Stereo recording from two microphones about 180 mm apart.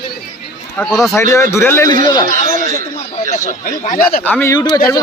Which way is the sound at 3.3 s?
45° left (ahead or behind).